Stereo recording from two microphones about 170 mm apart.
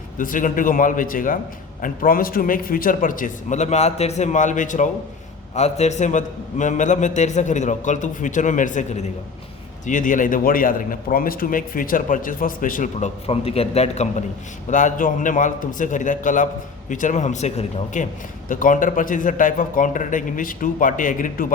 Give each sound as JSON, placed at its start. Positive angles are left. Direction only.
{"t": 0.2, "sound": "speech", "side_deg": 50}
{"t": 13.2, "sound": "a man's voice", "side_deg": 35}